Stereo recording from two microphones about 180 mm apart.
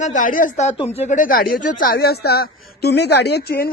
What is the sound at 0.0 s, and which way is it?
Speech, 45° left (ahead or behind).